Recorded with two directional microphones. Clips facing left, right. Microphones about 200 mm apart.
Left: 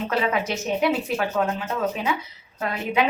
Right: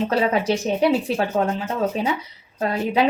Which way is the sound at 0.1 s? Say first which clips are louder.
Right 4 dB; 30° right (ahead or behind).